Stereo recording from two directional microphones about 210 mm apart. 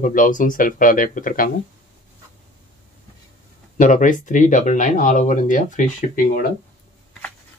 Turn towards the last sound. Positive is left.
turn(degrees=40)  # may be behind; listen again after turning